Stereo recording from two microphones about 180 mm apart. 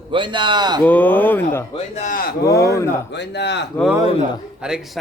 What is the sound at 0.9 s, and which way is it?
Speech, 10° left (ahead or behind).